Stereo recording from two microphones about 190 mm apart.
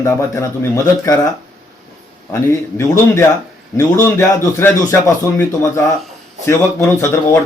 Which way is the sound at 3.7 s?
15° left (ahead or behind).